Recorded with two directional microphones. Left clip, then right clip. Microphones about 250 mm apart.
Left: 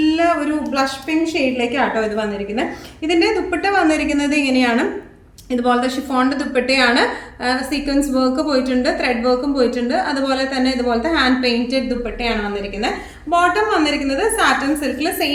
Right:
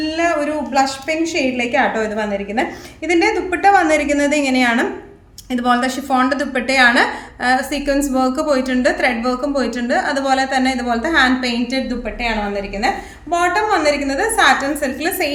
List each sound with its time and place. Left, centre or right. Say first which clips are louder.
0.0 s a woman's voice: left 1 dB; right
13.3 s a woman's voice: even; right